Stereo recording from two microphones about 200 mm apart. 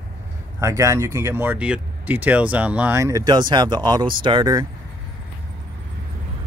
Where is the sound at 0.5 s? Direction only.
15° right (ahead or behind).